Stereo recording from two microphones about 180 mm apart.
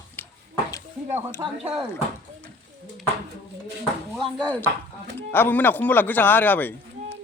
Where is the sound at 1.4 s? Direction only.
25° right (ahead or behind).